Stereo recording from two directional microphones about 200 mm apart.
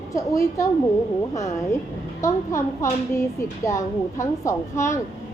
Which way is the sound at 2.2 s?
15° left (ahead or behind).